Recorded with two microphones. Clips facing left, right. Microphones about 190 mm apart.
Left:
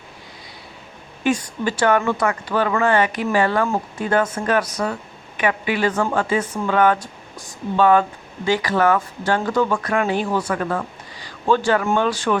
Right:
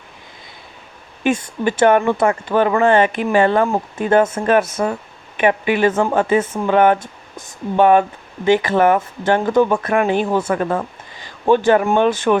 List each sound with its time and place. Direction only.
1.2 s speech: 20° right (ahead or behind)